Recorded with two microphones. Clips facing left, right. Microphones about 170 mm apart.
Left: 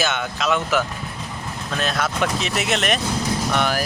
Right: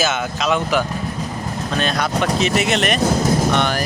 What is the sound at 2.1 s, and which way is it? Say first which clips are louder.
Speech: right 4 dB; 40° right (ahead or behind).